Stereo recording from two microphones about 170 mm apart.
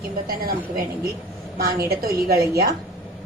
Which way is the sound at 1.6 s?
60° right (ahead or behind).